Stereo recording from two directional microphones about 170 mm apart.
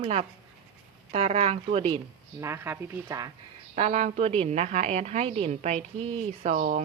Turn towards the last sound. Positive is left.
turn(degrees=-40)  # may be behind; listen again after turning